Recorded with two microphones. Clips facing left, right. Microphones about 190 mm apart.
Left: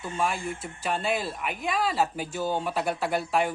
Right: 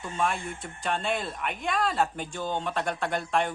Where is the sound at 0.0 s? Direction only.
5° left (ahead or behind).